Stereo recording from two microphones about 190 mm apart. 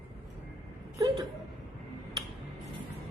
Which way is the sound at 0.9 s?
25° right (ahead or behind).